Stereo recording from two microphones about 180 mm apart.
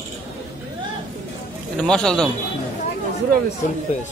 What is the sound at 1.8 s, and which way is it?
Speech, 5° left (ahead or behind).